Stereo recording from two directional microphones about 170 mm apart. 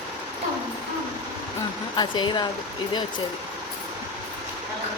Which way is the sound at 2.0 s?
25° left (ahead or behind).